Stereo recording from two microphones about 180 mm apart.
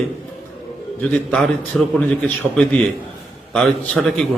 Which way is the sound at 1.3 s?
Centre (ahead or behind).